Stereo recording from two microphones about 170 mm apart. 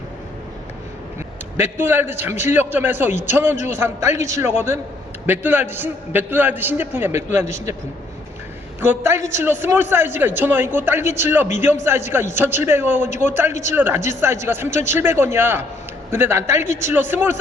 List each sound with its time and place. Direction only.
1.5 s a man's voice: 15° right (ahead or behind)
8.8 s a man's voice: 15° right (ahead or behind)
13.5 s speech: 45° left (ahead or behind)
13.7 s a man's voice: 15° right (ahead or behind)